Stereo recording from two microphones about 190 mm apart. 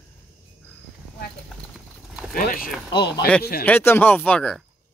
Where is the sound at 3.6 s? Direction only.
10° left (ahead or behind).